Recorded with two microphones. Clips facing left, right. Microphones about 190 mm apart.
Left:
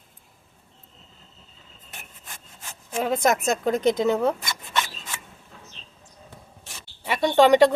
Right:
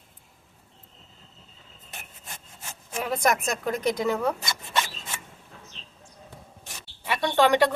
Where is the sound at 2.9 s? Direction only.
25° left (ahead or behind).